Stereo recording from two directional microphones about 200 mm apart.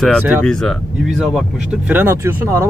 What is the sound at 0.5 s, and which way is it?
Speech, centre (ahead or behind).